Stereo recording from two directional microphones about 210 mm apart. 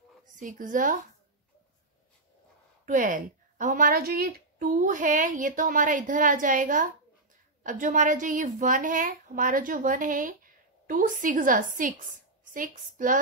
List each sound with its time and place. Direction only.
0.4 s a woman's voice: 40° right (ahead or behind)
2.8 s a woman's voice: 40° right (ahead or behind)